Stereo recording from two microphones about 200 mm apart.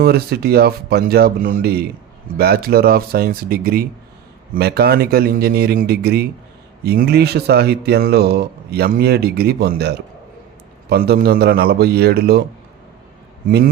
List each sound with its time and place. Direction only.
0.0 s speech: 50° right (ahead or behind)